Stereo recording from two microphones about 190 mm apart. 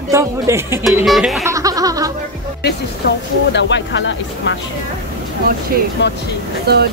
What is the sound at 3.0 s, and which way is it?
Speech, 60° left (ahead or behind).